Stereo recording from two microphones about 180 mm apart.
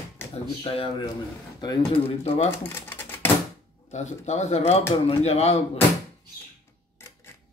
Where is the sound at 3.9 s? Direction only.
40° left (ahead or behind).